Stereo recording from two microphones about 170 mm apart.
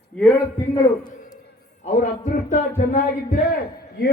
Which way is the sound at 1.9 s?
45° left (ahead or behind).